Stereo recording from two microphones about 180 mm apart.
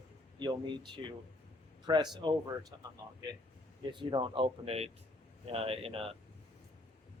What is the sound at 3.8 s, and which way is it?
Speech, 25° right (ahead or behind).